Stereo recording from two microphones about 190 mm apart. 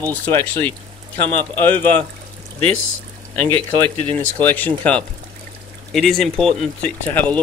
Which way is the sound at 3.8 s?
10° left (ahead or behind).